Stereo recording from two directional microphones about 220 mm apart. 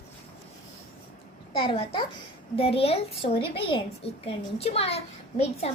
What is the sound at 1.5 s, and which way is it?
A woman's voice, 25° left (ahead or behind).